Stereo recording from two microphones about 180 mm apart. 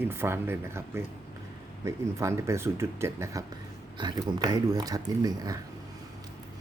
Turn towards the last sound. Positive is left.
turn(degrees=-20)  # may be behind; listen again after turning